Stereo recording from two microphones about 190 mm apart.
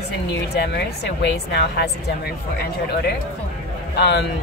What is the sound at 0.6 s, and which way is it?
Speech, 60° left (ahead or behind).